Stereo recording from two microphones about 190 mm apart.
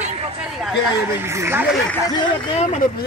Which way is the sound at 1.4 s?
10° right (ahead or behind).